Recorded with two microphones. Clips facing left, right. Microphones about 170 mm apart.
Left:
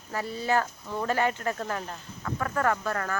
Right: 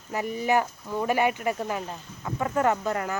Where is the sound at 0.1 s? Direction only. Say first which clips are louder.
Right 3 dB; 15° right (ahead or behind).